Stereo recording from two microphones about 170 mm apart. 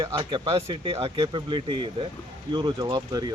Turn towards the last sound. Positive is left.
turn(degrees=-20)  # may be behind; listen again after turning